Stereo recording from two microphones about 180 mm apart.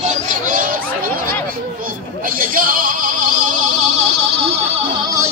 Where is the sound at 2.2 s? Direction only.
50° right (ahead or behind).